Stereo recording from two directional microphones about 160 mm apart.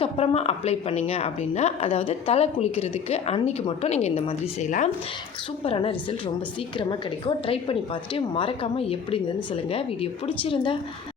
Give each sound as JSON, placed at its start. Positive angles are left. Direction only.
{"t": 0.0, "sound": "a woman's voice", "side_deg": 40}